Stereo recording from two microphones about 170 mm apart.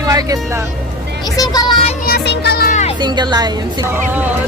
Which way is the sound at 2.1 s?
75° left (ahead or behind).